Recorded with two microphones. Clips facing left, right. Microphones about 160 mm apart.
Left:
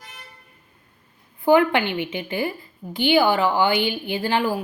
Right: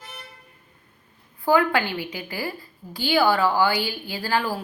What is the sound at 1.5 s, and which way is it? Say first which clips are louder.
Speech: left 3 dB; 20° left (ahead or behind).